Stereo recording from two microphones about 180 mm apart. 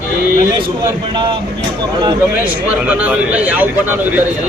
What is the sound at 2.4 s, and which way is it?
Speech, 5° right (ahead or behind).